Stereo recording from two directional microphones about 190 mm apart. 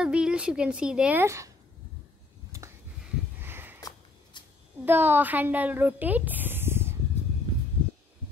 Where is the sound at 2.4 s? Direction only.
15° right (ahead or behind).